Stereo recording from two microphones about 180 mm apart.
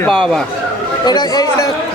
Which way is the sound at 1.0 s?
25° left (ahead or behind).